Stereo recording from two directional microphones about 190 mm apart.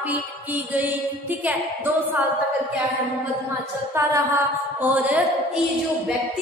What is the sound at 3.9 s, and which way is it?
Music, 15° right (ahead or behind).